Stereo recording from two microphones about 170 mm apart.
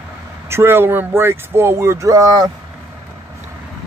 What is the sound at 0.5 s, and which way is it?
Speech, 15° right (ahead or behind).